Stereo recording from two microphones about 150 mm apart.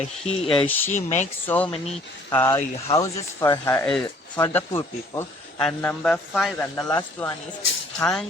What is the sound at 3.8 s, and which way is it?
Speech, 5° left (ahead or behind).